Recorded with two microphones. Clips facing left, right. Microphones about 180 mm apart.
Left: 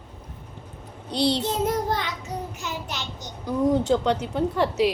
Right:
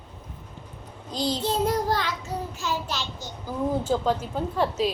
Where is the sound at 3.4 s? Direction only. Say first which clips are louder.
Left 5 dB; 75° left (ahead or behind).